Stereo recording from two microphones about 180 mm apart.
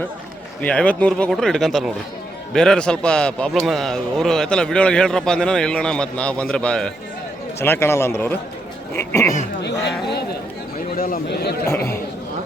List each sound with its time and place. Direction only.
0.6 s a man's voice: 5° left (ahead or behind)
9.6 s speech: 70° left (ahead or behind)
10.9 s a man's voice: 55° left (ahead or behind)